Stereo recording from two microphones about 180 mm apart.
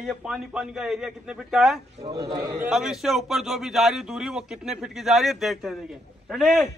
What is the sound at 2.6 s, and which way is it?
A man's voice, centre (ahead or behind).